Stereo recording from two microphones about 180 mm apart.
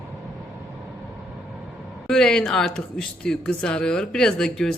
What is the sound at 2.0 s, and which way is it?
A woman's voice, 5° left (ahead or behind).